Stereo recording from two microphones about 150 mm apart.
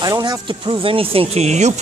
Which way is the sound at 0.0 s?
25° right (ahead or behind).